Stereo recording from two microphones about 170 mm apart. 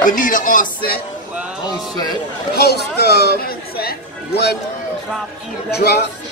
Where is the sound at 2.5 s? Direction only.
70° left (ahead or behind).